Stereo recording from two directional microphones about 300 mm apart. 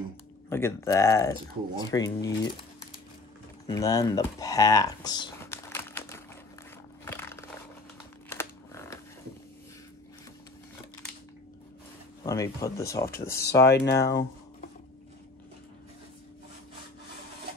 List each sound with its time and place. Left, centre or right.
0.5 s speech: centre
3.6 s a sound: centre
12.2 s speech: centre
13.5 s speech: left